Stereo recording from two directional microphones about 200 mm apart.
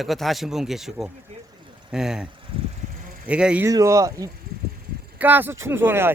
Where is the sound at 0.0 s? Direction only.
Centre (ahead or behind).